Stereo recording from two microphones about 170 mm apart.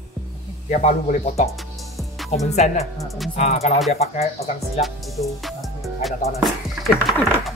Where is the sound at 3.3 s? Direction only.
40° left (ahead or behind).